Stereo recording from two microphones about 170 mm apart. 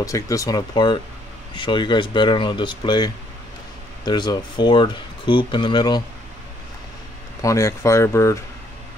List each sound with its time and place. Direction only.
0.0 s speech: 20° left (ahead or behind)
7.4 s speech: 15° left (ahead or behind)